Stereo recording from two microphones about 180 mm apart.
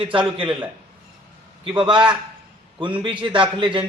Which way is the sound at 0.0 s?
30° right (ahead or behind).